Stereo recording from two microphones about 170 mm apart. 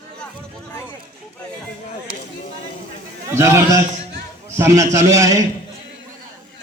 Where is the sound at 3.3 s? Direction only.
15° right (ahead or behind).